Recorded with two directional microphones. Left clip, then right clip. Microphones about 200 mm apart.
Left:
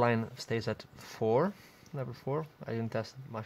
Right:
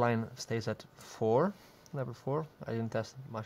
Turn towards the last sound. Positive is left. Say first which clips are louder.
# even
turn(degrees=5)  # may be behind; listen again after turning